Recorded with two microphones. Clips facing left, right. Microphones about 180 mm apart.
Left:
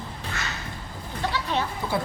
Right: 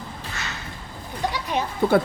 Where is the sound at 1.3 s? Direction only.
15° right (ahead or behind).